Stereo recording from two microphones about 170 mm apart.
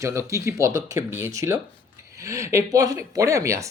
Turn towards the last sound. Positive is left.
turn(degrees=-15)  # may be behind; listen again after turning